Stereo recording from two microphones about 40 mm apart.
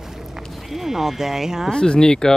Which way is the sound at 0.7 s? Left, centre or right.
Centre.